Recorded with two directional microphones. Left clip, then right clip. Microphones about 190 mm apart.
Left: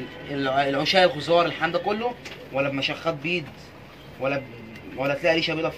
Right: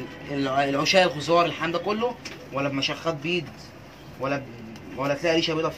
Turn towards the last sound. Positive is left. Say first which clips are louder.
# left 1 dB
turn(degrees=-5)  # may be behind; listen again after turning